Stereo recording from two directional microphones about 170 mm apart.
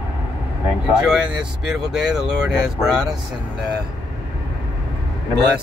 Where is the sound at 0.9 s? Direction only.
5° right (ahead or behind).